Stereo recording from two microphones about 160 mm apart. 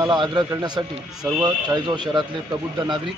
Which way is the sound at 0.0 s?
25° right (ahead or behind).